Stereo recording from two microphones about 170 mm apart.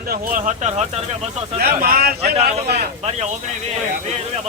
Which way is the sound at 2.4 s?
40° right (ahead or behind).